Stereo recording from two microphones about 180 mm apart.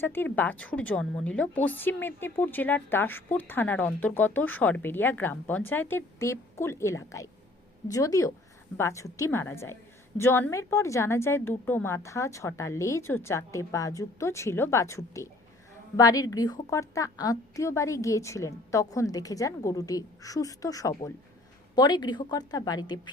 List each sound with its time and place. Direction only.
0.0 s a woman's voice: 10° left (ahead or behind)